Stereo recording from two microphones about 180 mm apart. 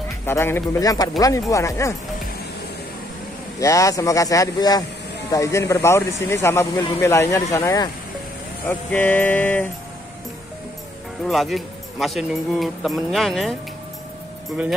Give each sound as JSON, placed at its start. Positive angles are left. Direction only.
{"t": 0.3, "sound": "speech", "side_deg": 15}
{"t": 3.5, "sound": "speech", "side_deg": 15}
{"t": 11.2, "sound": "speech", "side_deg": 0}